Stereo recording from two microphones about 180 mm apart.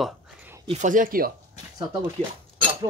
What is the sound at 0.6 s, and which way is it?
Speech, 40° right (ahead or behind).